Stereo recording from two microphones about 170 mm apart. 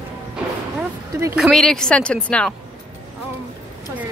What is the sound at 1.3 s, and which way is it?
Speech, centre (ahead or behind).